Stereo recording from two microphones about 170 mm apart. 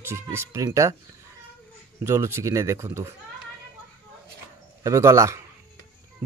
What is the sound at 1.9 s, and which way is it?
Speech, 15° right (ahead or behind).